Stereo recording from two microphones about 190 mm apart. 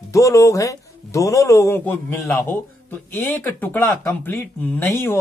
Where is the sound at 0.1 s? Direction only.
15° left (ahead or behind).